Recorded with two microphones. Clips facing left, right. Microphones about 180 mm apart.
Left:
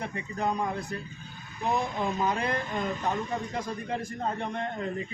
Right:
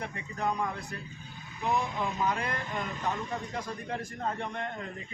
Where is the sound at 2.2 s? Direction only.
25° left (ahead or behind).